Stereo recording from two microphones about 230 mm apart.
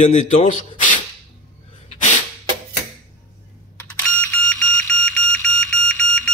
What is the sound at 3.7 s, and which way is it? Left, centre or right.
Smoke detector, centre.